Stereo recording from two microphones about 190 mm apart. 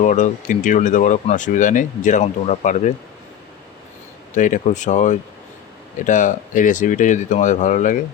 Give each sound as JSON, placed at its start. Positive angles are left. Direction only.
{"t": 0.0, "sound": "speech", "side_deg": 40}
{"t": 4.4, "sound": "speech", "side_deg": 40}